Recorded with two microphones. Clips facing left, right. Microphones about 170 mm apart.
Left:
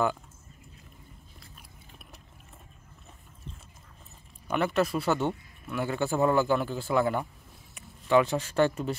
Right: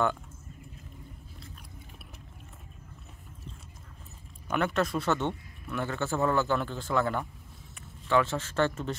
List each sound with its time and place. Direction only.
4.5 s a man's voice: 5° left (ahead or behind)